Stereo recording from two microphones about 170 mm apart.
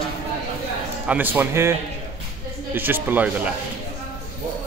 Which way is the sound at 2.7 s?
10° right (ahead or behind).